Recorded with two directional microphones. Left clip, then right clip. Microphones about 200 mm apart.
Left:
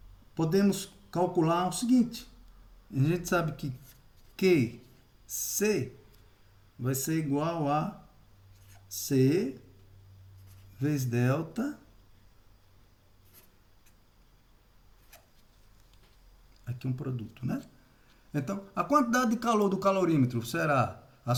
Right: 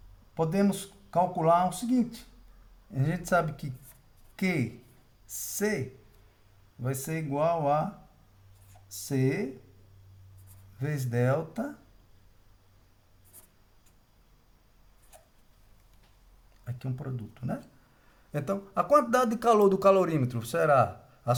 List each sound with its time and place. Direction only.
0.3 s speech: 30° right (ahead or behind)
6.8 s speech: 30° right (ahead or behind)
9.0 s speech: 30° right (ahead or behind)
10.8 s speech: 35° right (ahead or behind)
16.6 s a sound: 35° right (ahead or behind)
17.3 s speech: 30° right (ahead or behind)
18.3 s speech: 45° right (ahead or behind)